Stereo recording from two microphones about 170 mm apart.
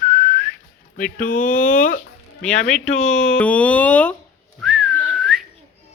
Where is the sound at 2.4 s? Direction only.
5° left (ahead or behind).